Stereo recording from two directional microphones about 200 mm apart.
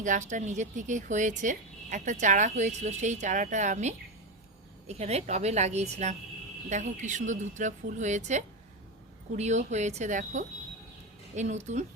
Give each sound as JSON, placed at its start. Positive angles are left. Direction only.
{"t": 0.0, "sound": "a woman's voice", "side_deg": -40}